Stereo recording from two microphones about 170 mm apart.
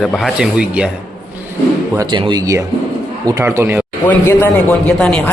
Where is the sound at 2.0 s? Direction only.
25° right (ahead or behind).